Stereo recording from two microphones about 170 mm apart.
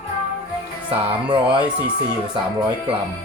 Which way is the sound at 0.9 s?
30° right (ahead or behind).